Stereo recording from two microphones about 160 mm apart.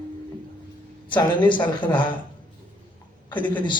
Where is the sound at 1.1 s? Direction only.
30° left (ahead or behind).